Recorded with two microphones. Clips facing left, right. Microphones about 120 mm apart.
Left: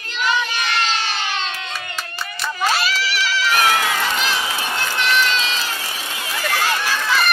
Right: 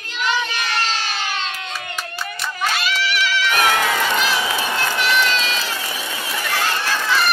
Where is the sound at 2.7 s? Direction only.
35° left (ahead or behind).